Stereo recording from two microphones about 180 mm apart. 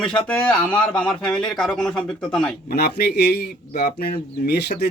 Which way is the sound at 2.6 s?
60° left (ahead or behind).